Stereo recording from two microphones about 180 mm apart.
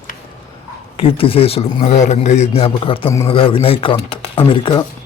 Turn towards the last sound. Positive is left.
turn(degrees=25)  # may be behind; listen again after turning